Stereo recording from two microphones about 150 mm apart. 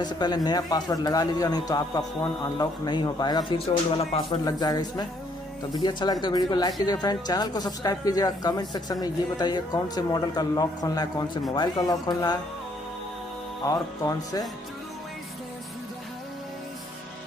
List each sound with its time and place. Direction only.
0.0 s speech: 30° left (ahead or behind)
3.5 s speech: 40° left (ahead or behind)
4.5 s speech: 25° left (ahead or behind)
13.7 s speech: 25° left (ahead or behind)